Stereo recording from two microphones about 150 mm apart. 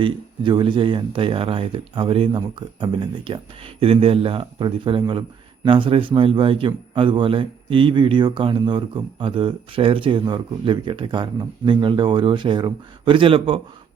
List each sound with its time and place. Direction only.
0.0 s a man's voice: 35° right (ahead or behind)